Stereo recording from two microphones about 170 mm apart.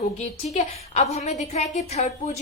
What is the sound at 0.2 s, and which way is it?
A woman's voice, 40° left (ahead or behind).